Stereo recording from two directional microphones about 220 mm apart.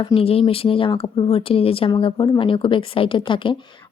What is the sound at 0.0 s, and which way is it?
Speech, 25° left (ahead or behind).